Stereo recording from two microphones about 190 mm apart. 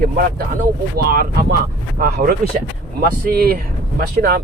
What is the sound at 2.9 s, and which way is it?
Speech, 50° right (ahead or behind).